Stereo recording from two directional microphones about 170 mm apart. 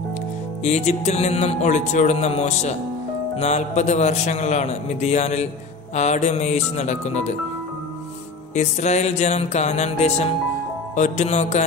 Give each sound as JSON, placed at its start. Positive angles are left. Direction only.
{"t": 0.7, "sound": "a man's voice", "side_deg": 40}
{"t": 8.5, "sound": "a man's voice", "side_deg": 40}